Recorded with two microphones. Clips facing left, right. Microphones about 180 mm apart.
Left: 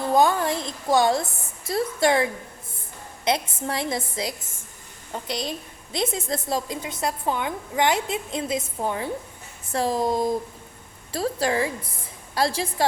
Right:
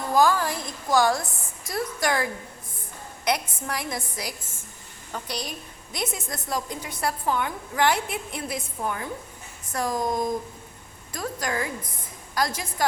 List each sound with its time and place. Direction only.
0.0 s a woman's voice: 25° left (ahead or behind)